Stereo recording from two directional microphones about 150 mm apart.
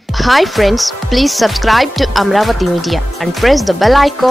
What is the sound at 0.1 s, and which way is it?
Speech, centre (ahead or behind).